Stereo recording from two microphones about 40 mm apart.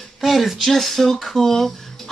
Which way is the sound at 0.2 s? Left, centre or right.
Centre.